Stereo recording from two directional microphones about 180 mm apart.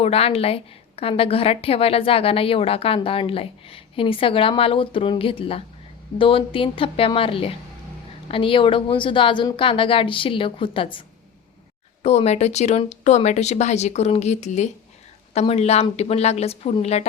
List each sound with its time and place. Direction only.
0.0 s a woman's voice: 35° left (ahead or behind)
12.0 s a woman's voice: 35° left (ahead or behind)